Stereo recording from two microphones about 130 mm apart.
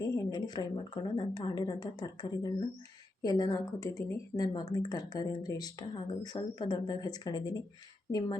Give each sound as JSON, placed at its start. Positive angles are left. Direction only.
{"t": 0.0, "sound": "speech", "side_deg": 30}